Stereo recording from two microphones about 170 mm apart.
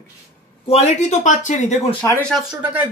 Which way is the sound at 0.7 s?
40° left (ahead or behind).